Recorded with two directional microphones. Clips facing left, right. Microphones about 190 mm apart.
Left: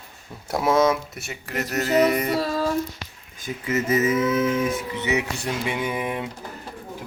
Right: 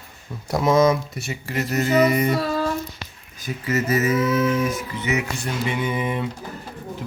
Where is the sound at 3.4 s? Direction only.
20° left (ahead or behind).